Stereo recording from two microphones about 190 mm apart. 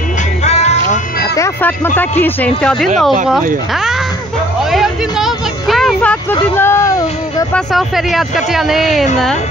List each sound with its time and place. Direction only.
0.4 s music: 35° left (ahead or behind)
1.3 s music: 15° left (ahead or behind)
2.0 s speech: 10° left (ahead or behind)
4.6 s music: centre (ahead or behind)
6.5 s speech: 15° left (ahead or behind)
7.5 s speech: centre (ahead or behind)